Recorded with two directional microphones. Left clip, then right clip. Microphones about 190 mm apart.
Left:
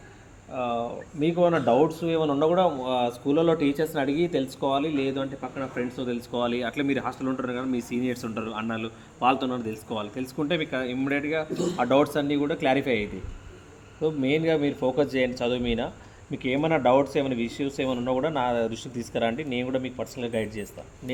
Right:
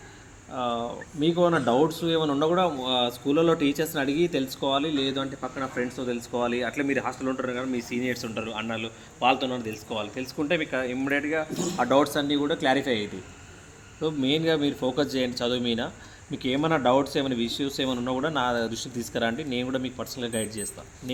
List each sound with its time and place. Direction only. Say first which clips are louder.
0.5 s speech: even; 15° left (ahead or behind)
5.5 s speech: right 1 dB; 45° left (ahead or behind)
11.8 s speech: even; 40° left (ahead or behind)
14.0 s speech: left 1 dB; 15° left (ahead or behind)